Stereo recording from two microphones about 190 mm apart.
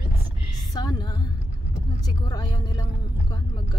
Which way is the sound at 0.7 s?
20° left (ahead or behind).